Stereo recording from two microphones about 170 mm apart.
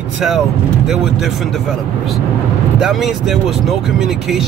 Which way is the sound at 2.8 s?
Centre (ahead or behind).